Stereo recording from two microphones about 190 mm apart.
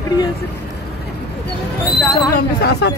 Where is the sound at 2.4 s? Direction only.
55° left (ahead or behind).